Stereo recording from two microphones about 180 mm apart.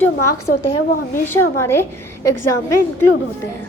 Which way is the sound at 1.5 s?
15° left (ahead or behind).